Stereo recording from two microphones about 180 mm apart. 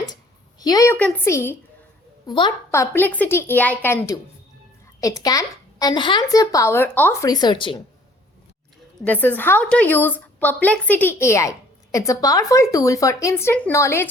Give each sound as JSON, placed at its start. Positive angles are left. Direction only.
{"t": 0.6, "sound": "a woman's voice", "side_deg": 20}
{"t": 2.2, "sound": "a woman's voice", "side_deg": 25}
{"t": 2.7, "sound": "a woman's voice", "side_deg": 15}
{"t": 9.0, "sound": "a woman's voice", "side_deg": 10}